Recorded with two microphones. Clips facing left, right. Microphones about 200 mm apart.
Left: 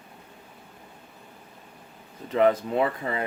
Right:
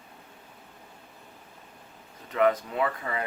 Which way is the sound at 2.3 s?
30° left (ahead or behind).